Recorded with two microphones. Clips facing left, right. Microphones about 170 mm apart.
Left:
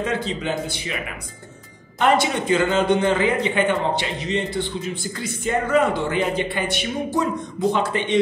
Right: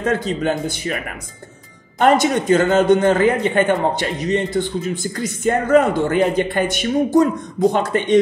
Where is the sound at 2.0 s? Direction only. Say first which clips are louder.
Right 4 dB; 45° right (ahead or behind).